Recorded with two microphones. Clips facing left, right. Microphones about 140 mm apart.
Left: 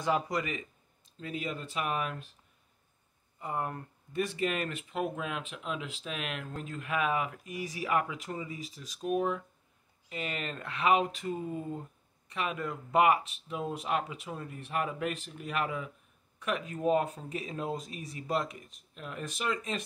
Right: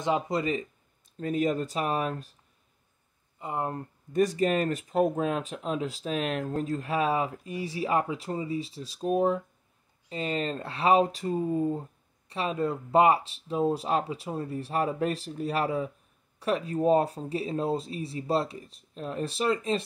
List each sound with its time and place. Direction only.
0.0 s speech: 25° right (ahead or behind)
1.1 s speech: 45° right (ahead or behind)
3.3 s speech: 20° right (ahead or behind)
4.1 s speech: 40° right (ahead or behind)